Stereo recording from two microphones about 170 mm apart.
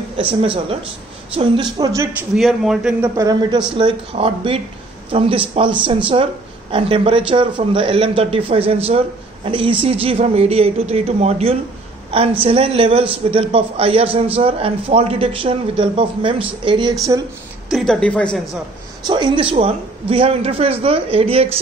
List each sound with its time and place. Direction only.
0.4 s a man's voice: 35° right (ahead or behind)
2.3 s a woman's voice: centre (ahead or behind)
3.2 s a woman's voice: 25° right (ahead or behind)
17.6 s a woman's voice: 5° left (ahead or behind)
19.0 s a man's voice: 25° right (ahead or behind)